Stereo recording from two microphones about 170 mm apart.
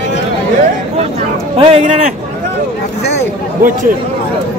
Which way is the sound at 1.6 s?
35° right (ahead or behind).